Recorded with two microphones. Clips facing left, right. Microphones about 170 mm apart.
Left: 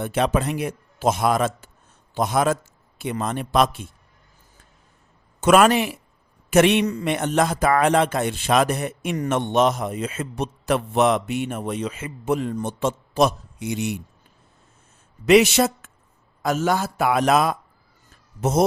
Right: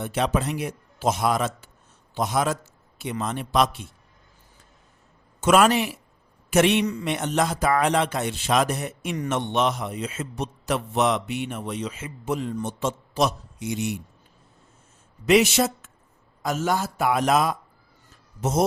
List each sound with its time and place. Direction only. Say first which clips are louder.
0.0 s a man's voice: left 3 dB; 55° left (ahead or behind)
5.4 s a man's voice: left 3 dB; 60° left (ahead or behind)
9.2 s a man's voice: left 4 dB; 45° left (ahead or behind); by 13.9 s 65° left (ahead or behind)
15.3 s a man's voice: left 3 dB; 65° left (ahead or behind)